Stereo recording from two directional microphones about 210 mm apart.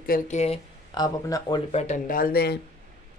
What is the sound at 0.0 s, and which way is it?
Speech, 45° left (ahead or behind).